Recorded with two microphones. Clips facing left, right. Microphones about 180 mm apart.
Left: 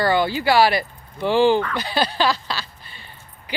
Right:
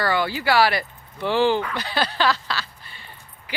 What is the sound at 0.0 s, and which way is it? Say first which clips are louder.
Speech: left 4 dB; 20° left (ahead or behind).